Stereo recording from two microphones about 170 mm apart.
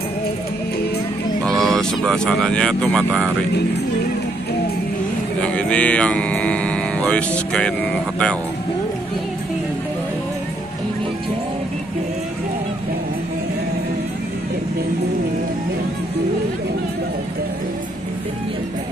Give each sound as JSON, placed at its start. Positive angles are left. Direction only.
{"t": 1.6, "sound": "speech", "side_deg": 5}
{"t": 5.4, "sound": "speech", "side_deg": 5}